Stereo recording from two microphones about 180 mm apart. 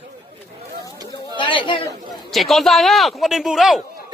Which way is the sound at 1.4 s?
25° left (ahead or behind).